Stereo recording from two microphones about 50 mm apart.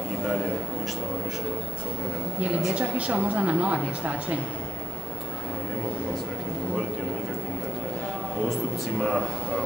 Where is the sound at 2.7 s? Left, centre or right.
Right.